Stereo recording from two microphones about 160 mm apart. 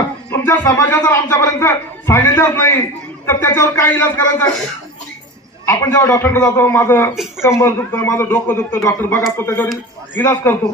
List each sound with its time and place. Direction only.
0.3 s a man's voice: 15° left (ahead or behind)
5.6 s a man's voice: 20° left (ahead or behind)